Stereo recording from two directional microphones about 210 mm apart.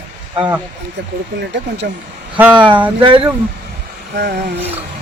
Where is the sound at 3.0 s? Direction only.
25° right (ahead or behind).